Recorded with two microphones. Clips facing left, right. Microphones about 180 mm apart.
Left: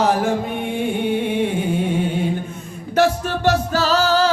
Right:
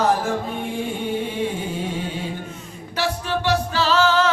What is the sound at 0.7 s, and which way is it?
Music, 60° left (ahead or behind).